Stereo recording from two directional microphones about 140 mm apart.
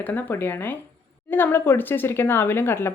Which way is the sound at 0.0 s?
10° left (ahead or behind).